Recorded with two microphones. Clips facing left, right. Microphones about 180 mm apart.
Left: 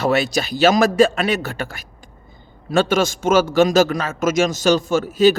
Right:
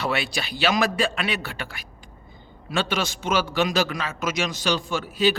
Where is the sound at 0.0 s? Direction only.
45° left (ahead or behind).